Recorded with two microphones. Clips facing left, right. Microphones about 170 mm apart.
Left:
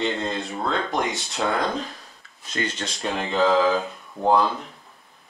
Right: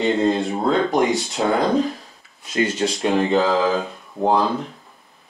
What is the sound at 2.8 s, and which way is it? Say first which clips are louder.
Speech: right 9 dB; centre (ahead or behind).